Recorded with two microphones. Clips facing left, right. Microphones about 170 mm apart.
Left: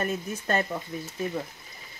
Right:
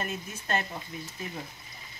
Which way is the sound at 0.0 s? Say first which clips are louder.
Left 6 dB; 45° left (ahead or behind).